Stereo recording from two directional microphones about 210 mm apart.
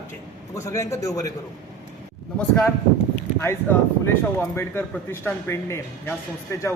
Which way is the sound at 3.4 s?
10° left (ahead or behind).